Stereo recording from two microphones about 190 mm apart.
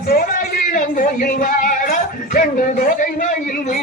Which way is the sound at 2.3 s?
45° left (ahead or behind).